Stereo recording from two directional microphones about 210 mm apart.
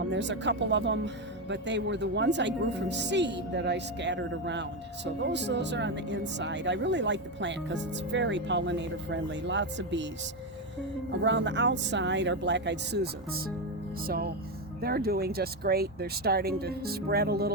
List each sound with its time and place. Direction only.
0.1 s speech: 60° right (ahead or behind)
11.2 s speech: 60° right (ahead or behind)
14.8 s speech: 45° right (ahead or behind)